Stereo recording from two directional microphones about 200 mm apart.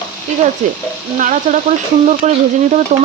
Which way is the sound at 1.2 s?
40° right (ahead or behind).